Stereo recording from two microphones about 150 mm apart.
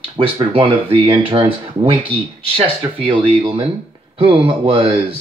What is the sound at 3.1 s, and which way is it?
Speech, 40° right (ahead or behind).